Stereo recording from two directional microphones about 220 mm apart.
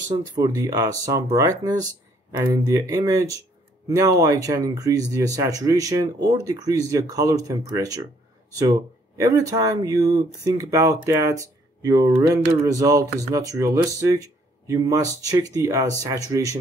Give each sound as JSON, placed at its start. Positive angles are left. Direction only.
{"t": 0.2, "sound": "speech", "side_deg": -15}